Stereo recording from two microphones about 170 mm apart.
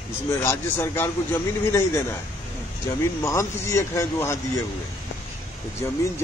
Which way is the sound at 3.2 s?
15° left (ahead or behind).